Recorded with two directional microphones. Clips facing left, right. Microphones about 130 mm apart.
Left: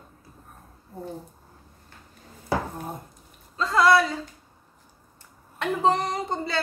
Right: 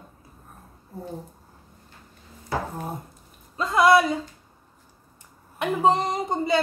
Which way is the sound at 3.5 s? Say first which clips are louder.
Right 2 dB; 15° right (ahead or behind).